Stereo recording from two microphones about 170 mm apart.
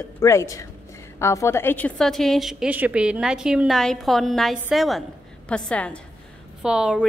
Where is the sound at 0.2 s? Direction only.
15° left (ahead or behind).